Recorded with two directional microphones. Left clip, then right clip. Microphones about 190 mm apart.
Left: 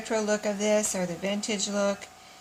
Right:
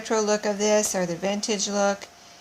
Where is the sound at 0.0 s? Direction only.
30° right (ahead or behind).